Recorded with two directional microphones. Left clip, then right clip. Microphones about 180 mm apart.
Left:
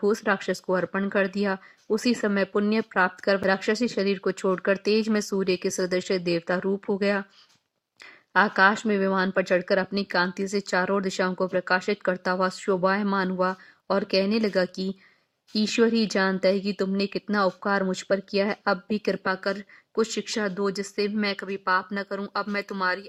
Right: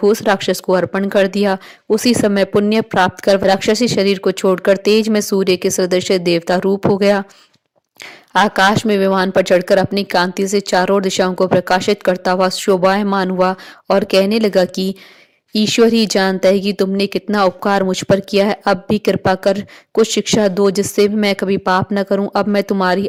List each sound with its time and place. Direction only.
0.0 s speech: 35° right (ahead or behind)
8.3 s speech: 40° right (ahead or behind)